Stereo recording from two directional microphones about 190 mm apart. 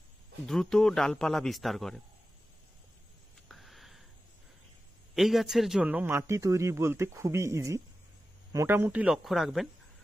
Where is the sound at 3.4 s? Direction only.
Centre (ahead or behind).